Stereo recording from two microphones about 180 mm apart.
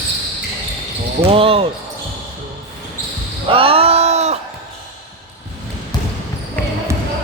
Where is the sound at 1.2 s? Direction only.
30° right (ahead or behind).